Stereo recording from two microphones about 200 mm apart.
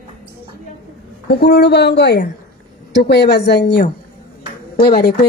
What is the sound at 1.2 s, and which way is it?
Speech, 55° left (ahead or behind).